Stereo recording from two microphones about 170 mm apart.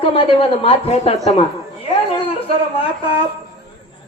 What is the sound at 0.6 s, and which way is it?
Speech, 35° left (ahead or behind).